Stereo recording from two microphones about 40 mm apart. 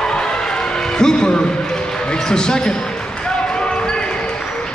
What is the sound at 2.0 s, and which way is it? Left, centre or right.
Basketball bounce, left.